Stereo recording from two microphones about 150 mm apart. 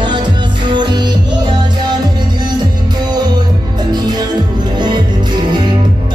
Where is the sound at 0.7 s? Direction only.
30° right (ahead or behind).